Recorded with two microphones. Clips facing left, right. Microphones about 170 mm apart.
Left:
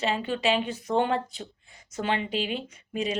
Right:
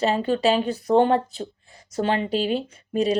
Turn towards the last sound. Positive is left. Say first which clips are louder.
# right 8 dB
turn(degrees=-35)  # may be behind; listen again after turning